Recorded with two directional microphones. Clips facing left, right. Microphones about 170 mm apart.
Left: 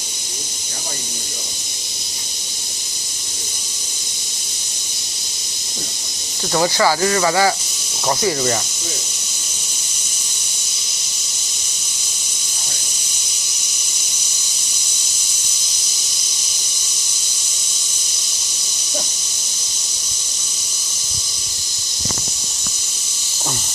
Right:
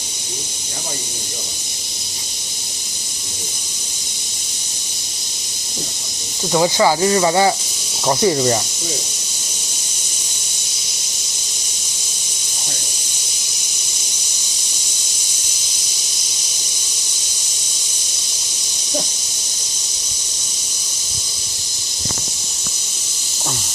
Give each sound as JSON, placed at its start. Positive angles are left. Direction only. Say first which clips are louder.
{"t": 6.5, "sound": "speech", "louder": "right 2 dB", "side_deg": -15}